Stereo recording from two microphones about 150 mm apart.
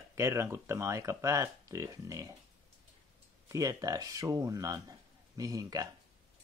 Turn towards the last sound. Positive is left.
turn(degrees=-25)  # may be behind; listen again after turning